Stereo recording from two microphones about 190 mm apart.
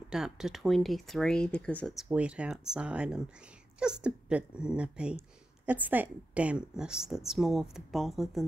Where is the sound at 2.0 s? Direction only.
5° right (ahead or behind).